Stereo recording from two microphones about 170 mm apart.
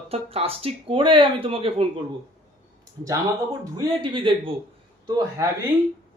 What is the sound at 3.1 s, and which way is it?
Speech, 25° right (ahead or behind).